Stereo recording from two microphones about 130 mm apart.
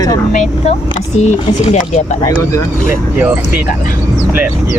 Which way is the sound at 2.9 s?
15° right (ahead or behind).